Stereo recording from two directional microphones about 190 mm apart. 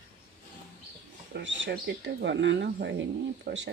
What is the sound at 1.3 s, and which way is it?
Speech, 75° right (ahead or behind).